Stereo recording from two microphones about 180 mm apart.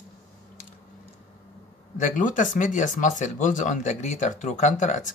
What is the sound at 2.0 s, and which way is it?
Speech, 45° left (ahead or behind).